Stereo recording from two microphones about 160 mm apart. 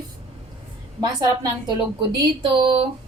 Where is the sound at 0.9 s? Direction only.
20° right (ahead or behind).